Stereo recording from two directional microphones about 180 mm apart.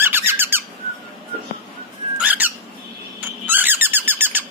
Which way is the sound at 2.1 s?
10° right (ahead or behind).